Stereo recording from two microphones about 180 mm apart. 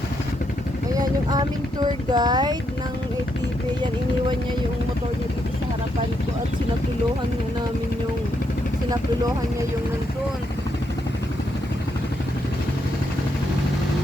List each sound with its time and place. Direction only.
0.9 s vehicle: 20° right (ahead or behind)
2.1 s speech: 25° right (ahead or behind)